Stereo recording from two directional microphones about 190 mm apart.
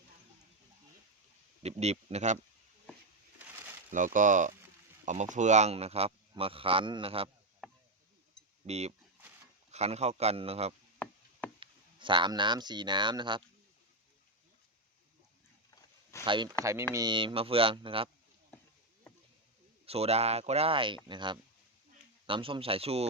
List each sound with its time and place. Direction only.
1.6 s a man's voice: 35° right (ahead or behind)
3.3 s a sound: 10° right (ahead or behind)
3.9 s a man's voice: 45° right (ahead or behind)
7.6 s chop: centre (ahead or behind)
8.6 s a man's voice: 35° right (ahead or behind)
11.0 s chopping: 10° left (ahead or behind)
11.6 s speech: 25° right (ahead or behind)
16.2 s speech: 25° right (ahead or behind)
19.8 s a man's voice: 30° right (ahead or behind)